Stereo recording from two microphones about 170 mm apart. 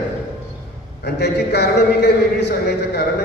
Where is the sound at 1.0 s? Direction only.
75° left (ahead or behind).